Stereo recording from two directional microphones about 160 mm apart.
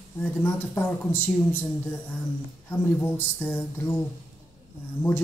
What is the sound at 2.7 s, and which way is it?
Speech, 15° left (ahead or behind).